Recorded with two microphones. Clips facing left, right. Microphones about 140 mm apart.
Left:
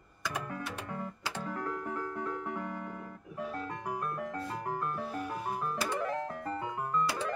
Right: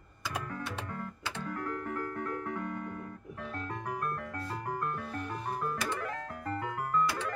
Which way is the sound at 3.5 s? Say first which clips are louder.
Right 2 dB; 5° left (ahead or behind).